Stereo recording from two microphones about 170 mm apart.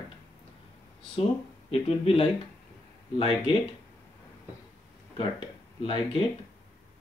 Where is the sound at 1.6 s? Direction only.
35° left (ahead or behind).